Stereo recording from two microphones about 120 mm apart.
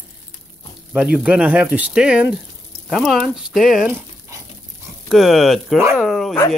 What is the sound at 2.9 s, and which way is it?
Speech, centre (ahead or behind).